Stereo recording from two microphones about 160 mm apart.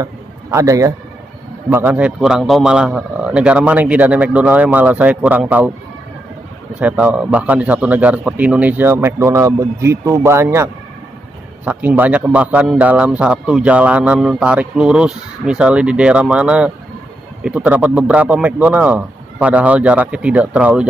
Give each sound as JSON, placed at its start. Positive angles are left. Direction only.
{"t": 0.0, "sound": "a man's voice", "side_deg": -20}
{"t": 6.8, "sound": "a man's voice", "side_deg": -10}